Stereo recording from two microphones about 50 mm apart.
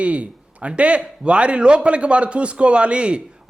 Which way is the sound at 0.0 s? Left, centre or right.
Right.